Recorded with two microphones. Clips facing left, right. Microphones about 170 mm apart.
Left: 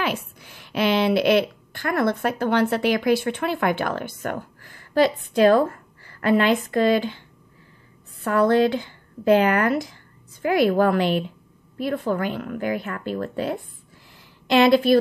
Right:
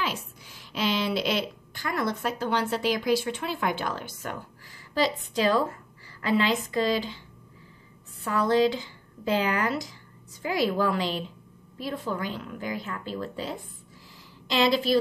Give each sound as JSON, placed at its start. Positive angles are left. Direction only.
{"t": 0.0, "sound": "a woman's voice", "side_deg": 60}
{"t": 8.2, "sound": "a woman's voice", "side_deg": 60}